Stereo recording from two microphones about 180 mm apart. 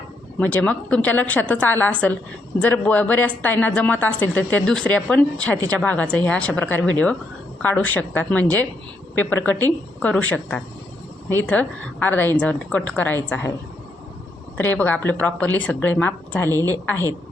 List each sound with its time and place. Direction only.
0.3 s a woman's voice: 10° left (ahead or behind)
14.6 s a woman's voice: 10° left (ahead or behind)
16.5 s a woman's voice: 20° right (ahead or behind)